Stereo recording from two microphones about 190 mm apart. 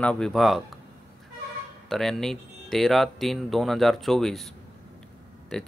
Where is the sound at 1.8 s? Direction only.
Centre (ahead or behind).